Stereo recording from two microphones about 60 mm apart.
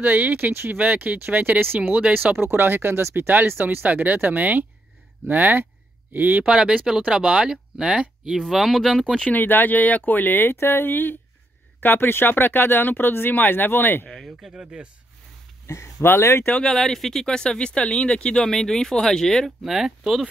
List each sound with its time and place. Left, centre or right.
0.0 s speech: right
1.8 s speech: centre
2.1 s speech: right
3.3 s speech: right
6.4 s speech: centre
8.4 s speech: centre
9.3 s speech: left
14.1 s speech: centre
14.5 s speech: centre
15.6 s speech: left
16.4 s speech: centre
16.7 s speech: centre
19.6 s speech: centre